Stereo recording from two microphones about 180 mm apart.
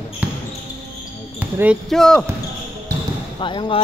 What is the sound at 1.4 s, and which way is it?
Speech, 10° right (ahead or behind).